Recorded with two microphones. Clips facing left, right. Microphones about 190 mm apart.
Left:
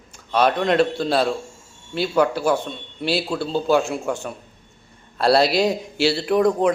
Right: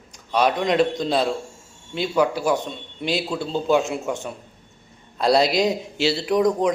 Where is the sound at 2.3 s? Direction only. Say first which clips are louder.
Left 1 dB; 5° left (ahead or behind).